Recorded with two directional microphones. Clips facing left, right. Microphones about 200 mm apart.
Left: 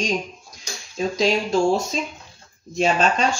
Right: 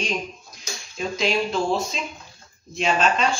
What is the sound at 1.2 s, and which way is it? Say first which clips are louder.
Speech: left 4 dB; 45° left (ahead or behind).